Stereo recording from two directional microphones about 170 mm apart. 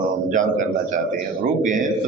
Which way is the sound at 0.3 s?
50° right (ahead or behind).